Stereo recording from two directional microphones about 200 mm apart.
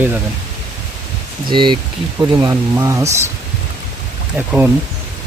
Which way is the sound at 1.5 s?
25° right (ahead or behind).